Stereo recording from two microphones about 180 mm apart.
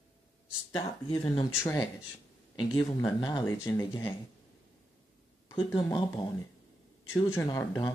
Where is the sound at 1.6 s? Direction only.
15° left (ahead or behind).